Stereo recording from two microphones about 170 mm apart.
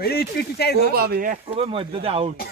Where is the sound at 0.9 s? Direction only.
65° right (ahead or behind).